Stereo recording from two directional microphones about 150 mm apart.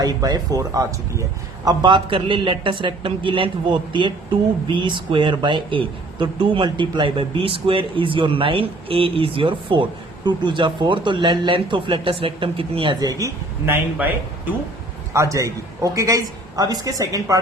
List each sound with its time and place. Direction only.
0.0 s a man's voice: 25° right (ahead or behind)
15.1 s a man's voice: 20° right (ahead or behind)